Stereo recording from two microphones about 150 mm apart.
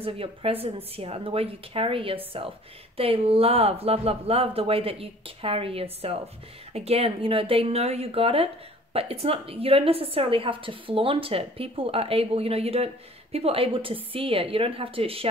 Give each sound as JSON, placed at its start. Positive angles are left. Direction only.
{"t": 0.0, "sound": "a woman's voice", "side_deg": -40}